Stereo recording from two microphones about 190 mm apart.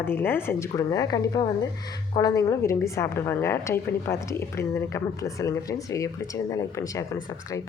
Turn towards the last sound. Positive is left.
turn(degrees=15)  # may be behind; listen again after turning